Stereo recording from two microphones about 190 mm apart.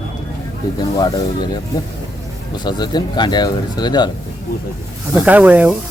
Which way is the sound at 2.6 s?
20° left (ahead or behind).